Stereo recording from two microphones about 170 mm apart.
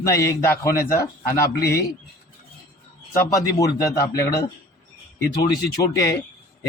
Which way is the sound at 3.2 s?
20° left (ahead or behind).